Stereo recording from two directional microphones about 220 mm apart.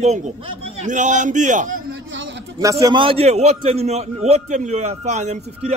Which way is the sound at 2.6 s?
15° right (ahead or behind).